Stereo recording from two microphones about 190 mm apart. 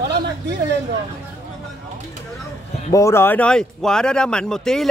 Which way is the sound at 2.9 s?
15° left (ahead or behind).